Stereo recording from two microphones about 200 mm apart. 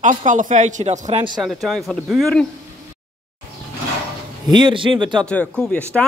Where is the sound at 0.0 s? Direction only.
40° right (ahead or behind).